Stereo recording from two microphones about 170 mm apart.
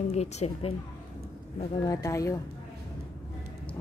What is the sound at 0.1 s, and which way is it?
Speech, 40° left (ahead or behind).